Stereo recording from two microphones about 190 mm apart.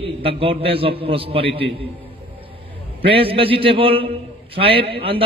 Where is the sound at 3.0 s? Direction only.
30° right (ahead or behind).